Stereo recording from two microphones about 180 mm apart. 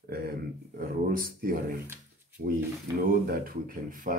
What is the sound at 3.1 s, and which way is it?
Speech, 55° right (ahead or behind).